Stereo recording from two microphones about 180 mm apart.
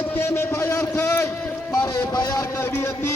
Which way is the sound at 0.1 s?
15° left (ahead or behind).